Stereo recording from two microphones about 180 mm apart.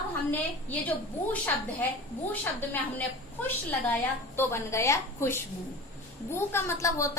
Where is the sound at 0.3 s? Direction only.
10° left (ahead or behind).